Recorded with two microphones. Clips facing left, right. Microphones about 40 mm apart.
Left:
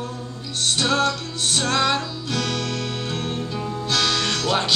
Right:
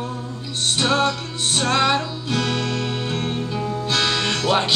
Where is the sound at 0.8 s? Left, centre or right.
Centre.